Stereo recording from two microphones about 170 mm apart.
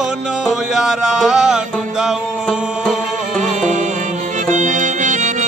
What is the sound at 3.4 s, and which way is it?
Music, 45° right (ahead or behind).